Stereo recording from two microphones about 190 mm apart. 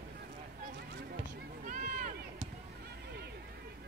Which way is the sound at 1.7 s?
45° right (ahead or behind).